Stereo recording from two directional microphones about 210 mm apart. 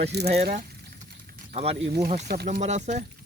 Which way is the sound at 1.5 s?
30° right (ahead or behind).